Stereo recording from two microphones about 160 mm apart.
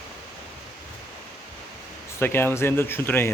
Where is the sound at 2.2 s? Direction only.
15° left (ahead or behind).